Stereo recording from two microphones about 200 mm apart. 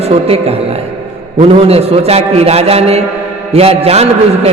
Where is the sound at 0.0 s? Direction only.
30° right (ahead or behind).